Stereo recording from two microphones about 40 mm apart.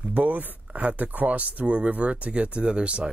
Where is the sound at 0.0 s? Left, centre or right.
Right.